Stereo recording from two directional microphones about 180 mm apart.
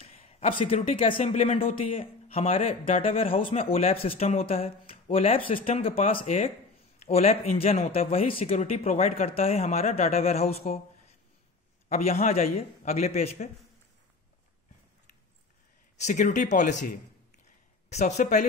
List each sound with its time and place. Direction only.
0.0 s a sound: 35° left (ahead or behind)
1.2 s speech: 40° left (ahead or behind)
16.0 s speech: 40° left (ahead or behind)